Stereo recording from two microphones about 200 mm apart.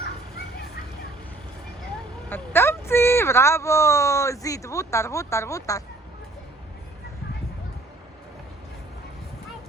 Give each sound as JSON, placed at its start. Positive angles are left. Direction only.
{"t": 2.3, "sound": "speech", "side_deg": 10}